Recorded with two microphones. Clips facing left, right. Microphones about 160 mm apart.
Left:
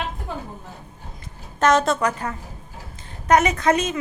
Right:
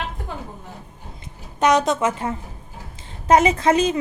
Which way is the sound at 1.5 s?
15° right (ahead or behind).